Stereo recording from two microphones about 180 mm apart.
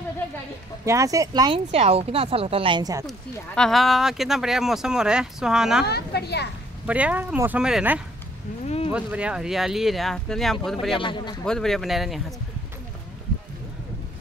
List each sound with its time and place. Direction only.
0.8 s speech: 15° right (ahead or behind)
3.1 s speech: centre (ahead or behind)
5.9 s a woman's voice: 65° left (ahead or behind)
6.9 s speech: 5° right (ahead or behind)
8.6 s a sound: 35° left (ahead or behind)
8.9 s speech: 5° right (ahead or behind)
11.0 s a man's voice: 25° left (ahead or behind)
11.4 s speech: 5° left (ahead or behind)